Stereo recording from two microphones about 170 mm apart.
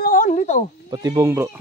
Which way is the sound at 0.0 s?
50° left (ahead or behind).